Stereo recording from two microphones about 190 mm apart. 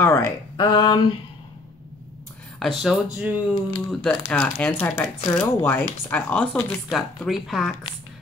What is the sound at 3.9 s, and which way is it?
Speech, 5° left (ahead or behind).